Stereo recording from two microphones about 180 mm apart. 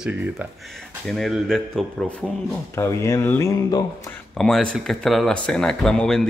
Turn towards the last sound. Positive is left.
turn(degrees=5)  # may be behind; listen again after turning